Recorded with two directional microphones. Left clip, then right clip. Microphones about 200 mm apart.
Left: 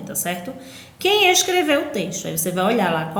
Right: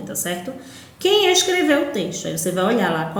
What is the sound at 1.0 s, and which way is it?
Speech, 20° left (ahead or behind).